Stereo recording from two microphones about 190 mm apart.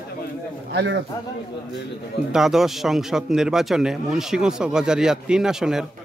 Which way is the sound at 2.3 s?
Centre (ahead or behind).